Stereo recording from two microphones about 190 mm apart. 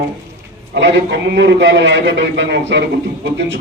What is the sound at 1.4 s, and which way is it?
A man's voice, 70° right (ahead or behind).